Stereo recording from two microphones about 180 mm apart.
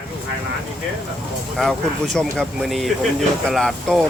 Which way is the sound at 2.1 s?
Centre (ahead or behind).